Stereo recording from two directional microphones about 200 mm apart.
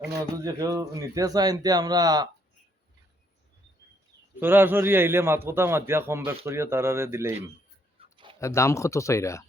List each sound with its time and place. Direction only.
0.4 s a man's voice: 15° right (ahead or behind)
4.4 s a man's voice: 10° right (ahead or behind)
7.9 s writing: 25° right (ahead or behind)
8.4 s speech: 15° left (ahead or behind)